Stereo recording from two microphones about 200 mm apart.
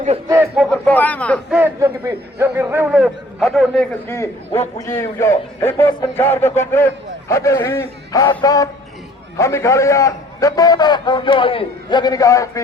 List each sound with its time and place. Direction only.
0.5 s a man's voice: 5° left (ahead or behind)
1.5 s a man's voice: 10° right (ahead or behind)
4.9 s a man's voice: 15° left (ahead or behind)